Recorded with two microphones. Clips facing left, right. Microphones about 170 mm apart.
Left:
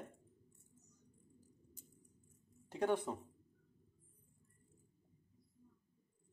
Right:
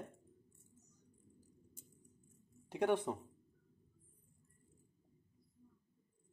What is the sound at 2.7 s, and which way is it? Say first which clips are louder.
Speech: right 2 dB; 15° right (ahead or behind).